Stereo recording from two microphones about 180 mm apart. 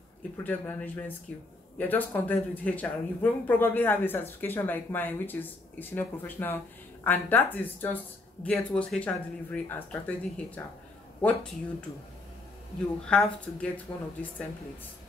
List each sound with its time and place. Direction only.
0.4 s speech: 10° left (ahead or behind)
13.0 s speech: 5° left (ahead or behind)
13.9 s speech: 20° left (ahead or behind)